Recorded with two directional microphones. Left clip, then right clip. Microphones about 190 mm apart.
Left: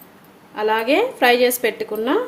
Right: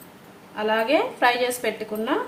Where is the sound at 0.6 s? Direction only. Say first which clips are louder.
Left 4 dB; 60° left (ahead or behind).